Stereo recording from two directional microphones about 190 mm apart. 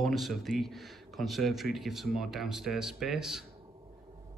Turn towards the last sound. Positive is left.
turn(degrees=-5)  # may be behind; listen again after turning